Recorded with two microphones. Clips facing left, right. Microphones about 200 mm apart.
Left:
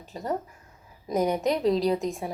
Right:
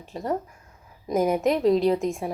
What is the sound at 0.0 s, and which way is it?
Speech, centre (ahead or behind).